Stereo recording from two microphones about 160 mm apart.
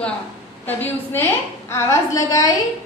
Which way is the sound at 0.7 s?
10° left (ahead or behind).